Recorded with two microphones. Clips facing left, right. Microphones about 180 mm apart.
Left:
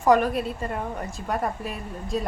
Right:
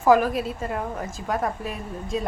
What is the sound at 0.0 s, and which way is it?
A woman's voice, centre (ahead or behind).